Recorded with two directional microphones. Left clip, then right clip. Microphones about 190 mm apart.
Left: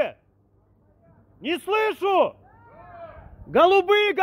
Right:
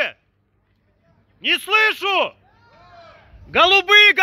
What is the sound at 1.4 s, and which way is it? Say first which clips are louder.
Speech: right 7 dB; 5° left (ahead or behind).